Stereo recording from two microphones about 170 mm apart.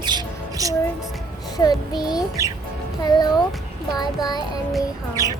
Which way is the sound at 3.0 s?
25° left (ahead or behind).